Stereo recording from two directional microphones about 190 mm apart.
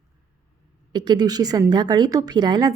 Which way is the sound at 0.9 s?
20° right (ahead or behind).